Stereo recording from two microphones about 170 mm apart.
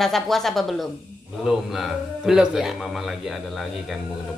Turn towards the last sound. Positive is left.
turn(degrees=0)  # may be behind; listen again after turning